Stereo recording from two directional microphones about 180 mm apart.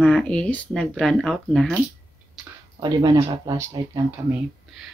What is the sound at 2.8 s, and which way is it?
Speech, 20° right (ahead or behind).